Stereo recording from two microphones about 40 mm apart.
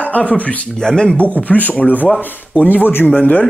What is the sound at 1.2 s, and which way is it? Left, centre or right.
Speech, left.